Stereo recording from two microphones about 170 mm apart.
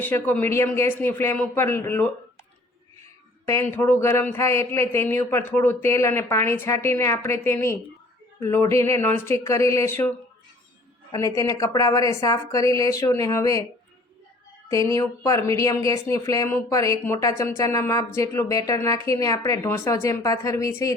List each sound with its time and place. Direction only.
0.0 s a man's voice: 10° left (ahead or behind)
3.4 s a man's voice: 15° left (ahead or behind)
11.1 s speech: 20° left (ahead or behind)
14.7 s speech: 20° left (ahead or behind)